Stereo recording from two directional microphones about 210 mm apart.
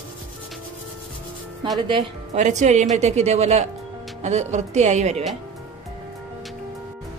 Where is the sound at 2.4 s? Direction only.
35° right (ahead or behind).